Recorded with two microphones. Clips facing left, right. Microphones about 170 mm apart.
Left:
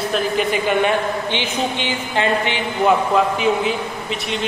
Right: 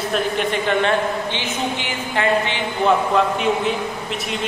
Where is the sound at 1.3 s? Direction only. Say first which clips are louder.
Left 2 dB; 20° left (ahead or behind).